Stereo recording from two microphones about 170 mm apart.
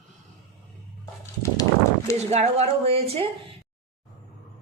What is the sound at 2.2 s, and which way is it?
A woman's voice, 40° right (ahead or behind).